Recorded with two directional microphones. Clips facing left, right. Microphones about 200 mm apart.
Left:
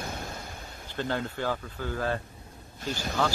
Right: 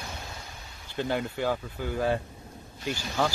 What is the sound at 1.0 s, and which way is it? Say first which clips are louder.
Speech: right 2 dB; 15° right (ahead or behind).